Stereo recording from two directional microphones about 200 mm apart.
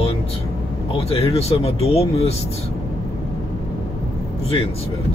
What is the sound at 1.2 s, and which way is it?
Speech, 30° left (ahead or behind).